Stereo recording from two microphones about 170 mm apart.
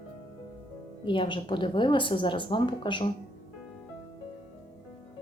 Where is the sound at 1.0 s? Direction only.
30° left (ahead or behind).